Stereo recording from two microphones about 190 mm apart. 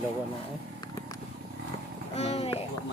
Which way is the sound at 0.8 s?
20° left (ahead or behind).